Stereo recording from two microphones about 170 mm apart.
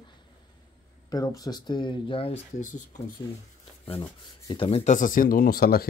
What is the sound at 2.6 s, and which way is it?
Speech, 45° left (ahead or behind).